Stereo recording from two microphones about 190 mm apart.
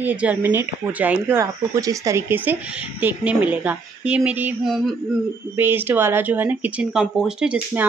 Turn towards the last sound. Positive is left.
turn(degrees=-10)  # may be behind; listen again after turning